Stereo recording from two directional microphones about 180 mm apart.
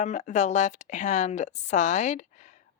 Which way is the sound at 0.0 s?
40° left (ahead or behind).